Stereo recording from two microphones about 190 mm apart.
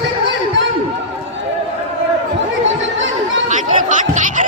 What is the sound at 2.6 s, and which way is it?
Chatter, 85° right.